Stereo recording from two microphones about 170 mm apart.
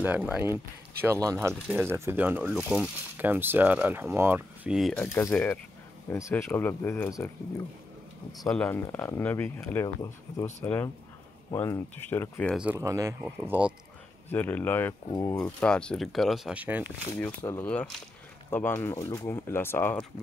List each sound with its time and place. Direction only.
0.0 s speech: 10° right (ahead or behind)
4.7 s speech: centre (ahead or behind)
5.0 s speech: 15° left (ahead or behind)
8.3 s speech: centre (ahead or behind)
12.5 s speech: 10° right (ahead or behind)
12.8 s speech: 20° right (ahead or behind)
13.2 s speech: 10° right (ahead or behind)
14.3 s speech: 10° left (ahead or behind)
15.3 s speech: 5° left (ahead or behind); by 16.9 s 10° right (ahead or behind)
17.4 s speech: 10° left (ahead or behind)